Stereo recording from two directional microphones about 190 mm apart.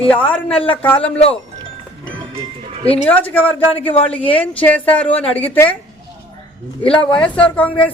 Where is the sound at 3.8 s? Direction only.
30° left (ahead or behind).